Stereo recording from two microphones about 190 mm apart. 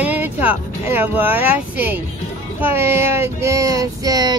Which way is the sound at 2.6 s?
10° right (ahead or behind).